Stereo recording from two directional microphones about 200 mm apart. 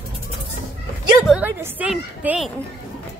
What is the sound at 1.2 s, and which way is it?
A woman's voice, 5° right (ahead or behind).